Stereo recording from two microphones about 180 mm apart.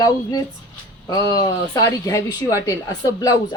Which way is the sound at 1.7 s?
20° left (ahead or behind).